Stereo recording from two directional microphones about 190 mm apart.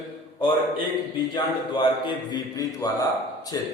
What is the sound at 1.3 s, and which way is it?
Speech, 25° left (ahead or behind).